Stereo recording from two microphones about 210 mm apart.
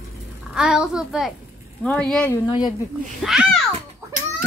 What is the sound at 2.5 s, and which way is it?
Speech, 20° left (ahead or behind).